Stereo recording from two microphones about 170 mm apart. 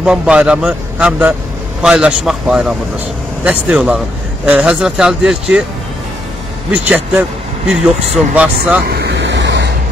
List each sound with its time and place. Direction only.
0.0 s a man's voice: 5° right (ahead or behind)
6.7 s a man's voice: 10° right (ahead or behind)
8.8 s vehicle: 75° right (ahead or behind); by 9.7 s 90° right